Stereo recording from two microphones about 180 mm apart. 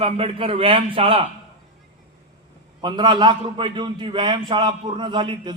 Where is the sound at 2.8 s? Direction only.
25° right (ahead or behind).